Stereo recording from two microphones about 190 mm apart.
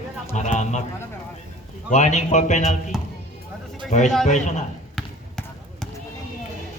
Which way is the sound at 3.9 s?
40° left (ahead or behind).